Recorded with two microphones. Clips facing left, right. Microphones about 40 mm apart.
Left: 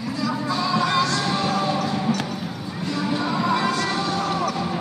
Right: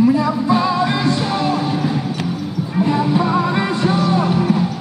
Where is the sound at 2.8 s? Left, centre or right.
Right.